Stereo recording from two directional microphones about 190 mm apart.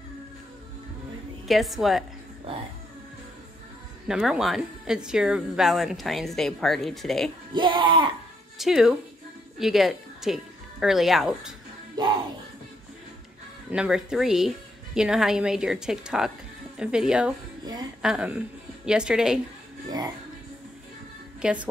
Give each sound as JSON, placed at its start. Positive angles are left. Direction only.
{"t": 1.5, "sound": "speech", "side_deg": 0}
{"t": 4.1, "sound": "speech", "side_deg": -5}
{"t": 7.5, "sound": "speech", "side_deg": -25}
{"t": 8.5, "sound": "a woman's voice", "side_deg": 0}
{"t": 12.0, "sound": "speech", "side_deg": -25}
{"t": 13.7, "sound": "speech", "side_deg": -5}
{"t": 21.4, "sound": "speech", "side_deg": -5}